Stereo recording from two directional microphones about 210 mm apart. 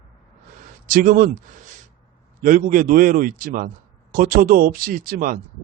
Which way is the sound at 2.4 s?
40° right (ahead or behind).